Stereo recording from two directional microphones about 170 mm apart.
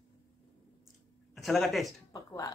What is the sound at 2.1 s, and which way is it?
Speech, 20° left (ahead or behind).